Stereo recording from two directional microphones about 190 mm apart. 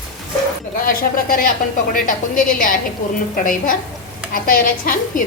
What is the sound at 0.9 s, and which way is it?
A woman's voice, 50° left (ahead or behind).